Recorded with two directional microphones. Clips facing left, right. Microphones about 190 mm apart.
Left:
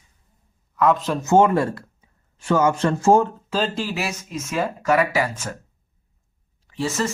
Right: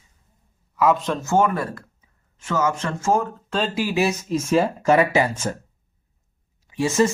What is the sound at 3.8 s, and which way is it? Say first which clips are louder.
Speech: right 5 dB; 15° right (ahead or behind).